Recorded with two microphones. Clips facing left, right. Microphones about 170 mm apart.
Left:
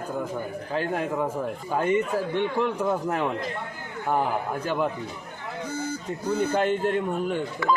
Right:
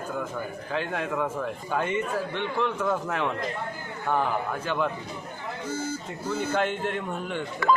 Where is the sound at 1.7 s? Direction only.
40° left (ahead or behind).